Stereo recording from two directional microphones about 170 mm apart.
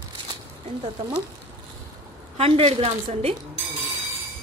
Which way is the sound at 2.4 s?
35° right (ahead or behind).